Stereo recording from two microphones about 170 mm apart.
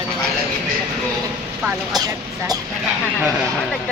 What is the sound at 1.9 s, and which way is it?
Speech, 20° right (ahead or behind).